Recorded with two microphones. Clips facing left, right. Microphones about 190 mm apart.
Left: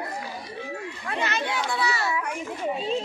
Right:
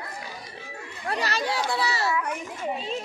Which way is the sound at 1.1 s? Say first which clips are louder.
Right 1 dB; 35° right (ahead or behind).